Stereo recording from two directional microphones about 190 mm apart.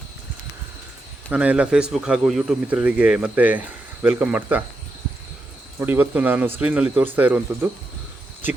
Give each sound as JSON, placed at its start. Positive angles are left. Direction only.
{"t": 1.3, "sound": "speech", "side_deg": -5}
{"t": 5.8, "sound": "speech", "side_deg": -10}